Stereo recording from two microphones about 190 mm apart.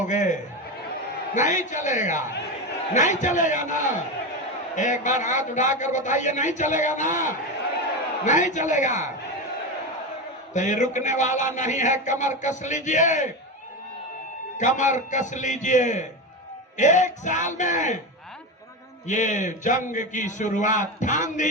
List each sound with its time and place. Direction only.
0.0 s a man's voice: 40° left (ahead or behind)
10.5 s a man's voice: 40° left (ahead or behind)
14.6 s a man's voice: 40° left (ahead or behind)
19.0 s a man's voice: 40° left (ahead or behind)